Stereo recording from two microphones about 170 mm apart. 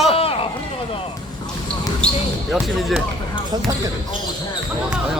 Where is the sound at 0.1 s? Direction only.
35° left (ahead or behind).